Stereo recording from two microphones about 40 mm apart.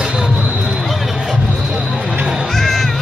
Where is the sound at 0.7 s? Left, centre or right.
Centre.